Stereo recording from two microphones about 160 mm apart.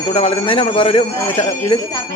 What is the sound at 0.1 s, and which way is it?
A man's voice, 35° left (ahead or behind).